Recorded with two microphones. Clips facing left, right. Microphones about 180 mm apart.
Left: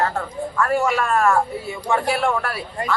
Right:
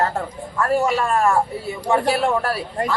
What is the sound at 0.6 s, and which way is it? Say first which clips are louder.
Speech: right 1 dB; 35° right (ahead or behind).